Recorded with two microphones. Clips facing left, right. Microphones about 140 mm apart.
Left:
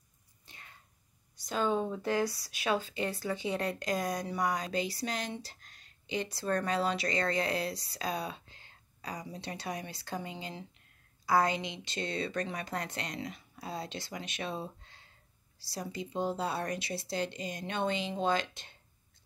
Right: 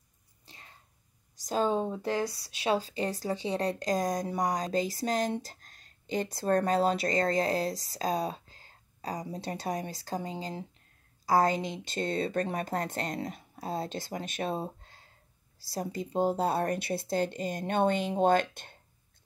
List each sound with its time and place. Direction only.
0.5 s whispering: 30° right (ahead or behind)
1.4 s a woman's voice: 35° right (ahead or behind); by 18.8 s 55° right (ahead or behind)